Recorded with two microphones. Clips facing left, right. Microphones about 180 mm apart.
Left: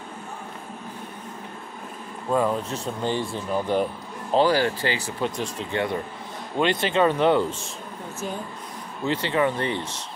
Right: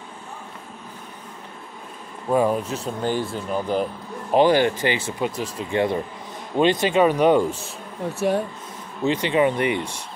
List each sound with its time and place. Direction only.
2.3 s speech: 15° right (ahead or behind)
2.7 s speech: centre (ahead or behind)
4.3 s speech: 20° right (ahead or behind)
5.2 s speech: 10° right (ahead or behind)
5.7 s speech: 25° right (ahead or behind)
8.2 s speech: 65° right (ahead or behind)
9.0 s speech: 15° right (ahead or behind)